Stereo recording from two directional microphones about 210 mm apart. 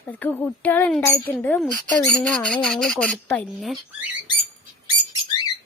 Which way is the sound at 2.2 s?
5° left (ahead or behind).